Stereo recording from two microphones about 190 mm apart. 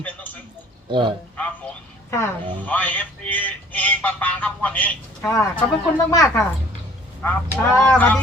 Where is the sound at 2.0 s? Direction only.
15° left (ahead or behind).